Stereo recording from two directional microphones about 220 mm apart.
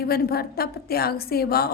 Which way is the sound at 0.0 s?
45° left (ahead or behind).